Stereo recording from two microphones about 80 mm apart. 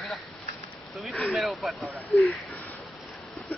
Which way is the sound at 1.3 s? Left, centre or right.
Centre.